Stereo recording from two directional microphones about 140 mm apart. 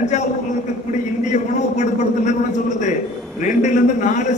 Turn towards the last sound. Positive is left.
turn(degrees=60)  # may be behind; listen again after turning